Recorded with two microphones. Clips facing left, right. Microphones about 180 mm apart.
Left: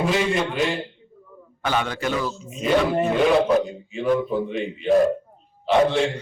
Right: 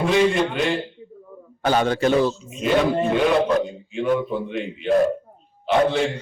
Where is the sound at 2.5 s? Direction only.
Centre (ahead or behind).